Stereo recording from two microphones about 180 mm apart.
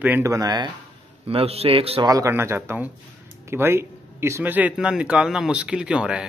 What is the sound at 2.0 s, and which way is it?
Speech, 15° right (ahead or behind).